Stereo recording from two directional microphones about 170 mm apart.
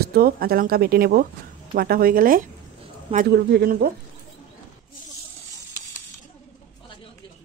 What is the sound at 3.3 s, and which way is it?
Speech, 75° right (ahead or behind).